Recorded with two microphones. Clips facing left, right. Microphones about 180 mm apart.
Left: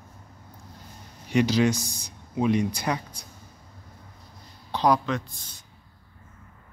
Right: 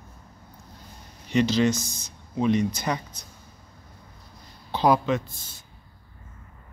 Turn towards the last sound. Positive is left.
turn(degrees=-5)  # may be behind; listen again after turning